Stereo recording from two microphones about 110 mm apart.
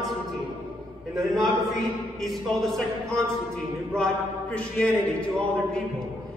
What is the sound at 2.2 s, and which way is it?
A woman's voice, centre (ahead or behind).